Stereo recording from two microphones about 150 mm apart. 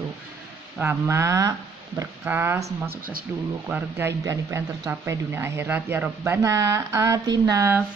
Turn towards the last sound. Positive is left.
turn(degrees=-20)  # may be behind; listen again after turning